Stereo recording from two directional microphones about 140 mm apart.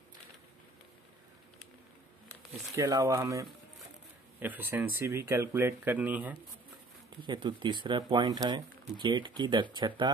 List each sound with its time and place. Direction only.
2.7 s speech: 20° right (ahead or behind)
7.2 s speech: 35° right (ahead or behind)